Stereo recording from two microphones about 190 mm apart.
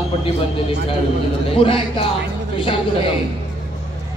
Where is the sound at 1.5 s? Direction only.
30° left (ahead or behind).